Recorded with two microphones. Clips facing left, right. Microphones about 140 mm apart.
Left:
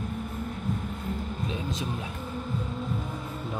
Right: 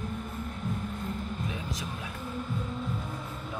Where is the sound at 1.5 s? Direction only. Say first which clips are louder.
Left 4 dB; 25° left (ahead or behind).